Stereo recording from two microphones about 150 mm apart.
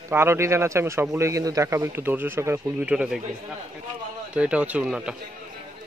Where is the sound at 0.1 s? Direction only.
15° right (ahead or behind).